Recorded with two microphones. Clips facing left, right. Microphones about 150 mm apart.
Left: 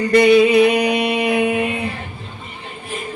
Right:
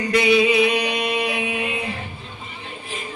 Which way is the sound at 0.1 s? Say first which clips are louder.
Left 6 dB; 50° left (ahead or behind).